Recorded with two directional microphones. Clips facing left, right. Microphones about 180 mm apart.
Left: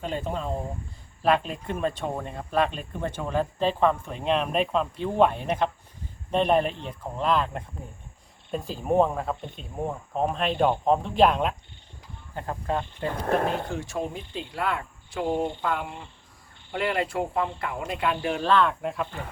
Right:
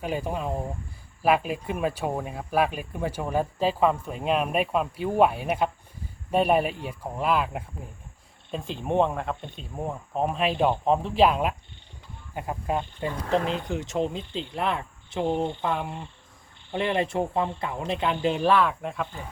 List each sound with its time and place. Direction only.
0.0 s speech: 10° right (ahead or behind)
8.7 s speech: 5° left (ahead or behind)